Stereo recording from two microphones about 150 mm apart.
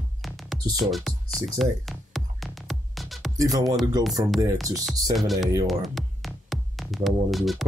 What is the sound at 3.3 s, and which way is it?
Speech, 25° right (ahead or behind).